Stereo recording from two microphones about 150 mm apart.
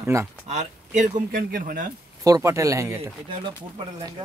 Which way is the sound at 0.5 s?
50° right (ahead or behind).